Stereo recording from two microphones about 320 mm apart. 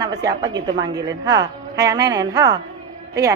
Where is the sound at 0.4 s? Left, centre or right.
Centre.